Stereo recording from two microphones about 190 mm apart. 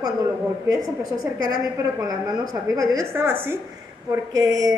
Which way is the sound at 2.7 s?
20° right (ahead or behind).